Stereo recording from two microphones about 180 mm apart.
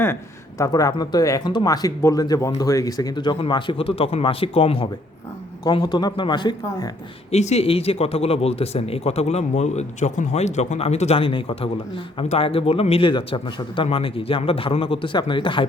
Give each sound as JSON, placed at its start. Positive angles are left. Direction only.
{"t": 0.6, "sound": "speech", "side_deg": 20}
{"t": 7.3, "sound": "speech", "side_deg": 35}